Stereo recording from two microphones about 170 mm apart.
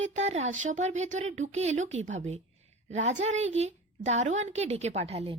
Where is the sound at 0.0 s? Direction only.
45° right (ahead or behind).